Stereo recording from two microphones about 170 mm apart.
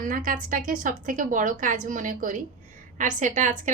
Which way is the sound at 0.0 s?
55° right (ahead or behind).